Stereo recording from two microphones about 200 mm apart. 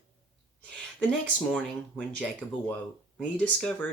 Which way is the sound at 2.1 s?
Centre (ahead or behind).